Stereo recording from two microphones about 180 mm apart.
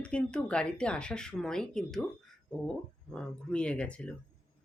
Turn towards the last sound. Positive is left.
turn(degrees=5)  # may be behind; listen again after turning